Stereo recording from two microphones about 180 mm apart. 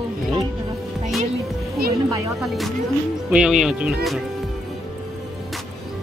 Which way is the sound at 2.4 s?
Centre (ahead or behind).